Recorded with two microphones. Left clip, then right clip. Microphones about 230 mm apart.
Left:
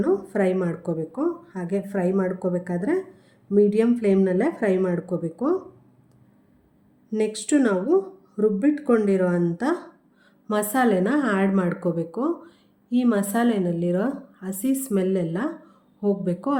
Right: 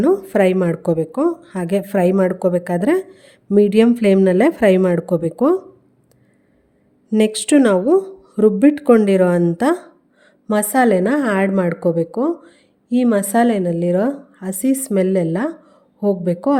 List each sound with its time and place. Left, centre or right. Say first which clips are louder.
0.0 s speech: right 8 dB; right
7.1 s speech: right 8 dB; right